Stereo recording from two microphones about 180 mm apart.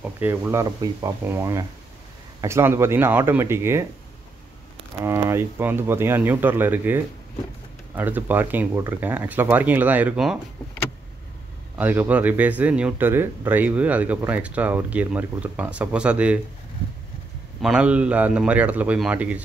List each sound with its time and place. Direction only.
0.0 s speech: 10° right (ahead or behind)
5.0 s speech: 15° right (ahead or behind)
11.8 s speech: 10° right (ahead or behind)
17.6 s speech: 5° right (ahead or behind)